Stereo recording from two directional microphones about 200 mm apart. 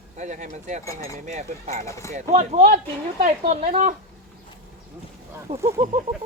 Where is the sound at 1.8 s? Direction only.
15° left (ahead or behind).